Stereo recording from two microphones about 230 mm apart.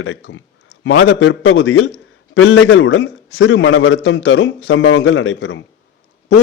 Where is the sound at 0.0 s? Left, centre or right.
Left.